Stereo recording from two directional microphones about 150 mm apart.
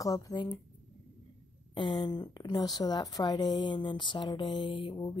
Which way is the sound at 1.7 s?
30° left (ahead or behind).